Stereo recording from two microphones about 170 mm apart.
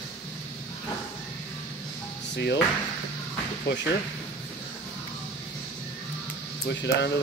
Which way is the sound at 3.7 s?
80° left.